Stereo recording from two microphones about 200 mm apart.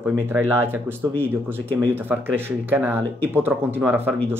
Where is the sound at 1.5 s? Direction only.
10° right (ahead or behind).